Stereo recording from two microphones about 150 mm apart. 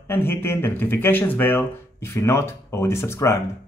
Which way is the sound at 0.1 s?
15° left (ahead or behind).